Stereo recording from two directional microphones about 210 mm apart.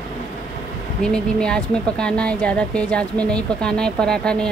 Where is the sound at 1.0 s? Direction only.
5° left (ahead or behind).